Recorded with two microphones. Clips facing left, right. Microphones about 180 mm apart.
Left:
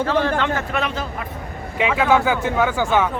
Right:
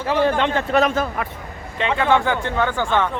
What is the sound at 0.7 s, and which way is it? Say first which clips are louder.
Speech: right 6 dB; 45° right (ahead or behind).